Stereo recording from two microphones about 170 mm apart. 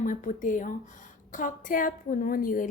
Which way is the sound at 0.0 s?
50° left (ahead or behind).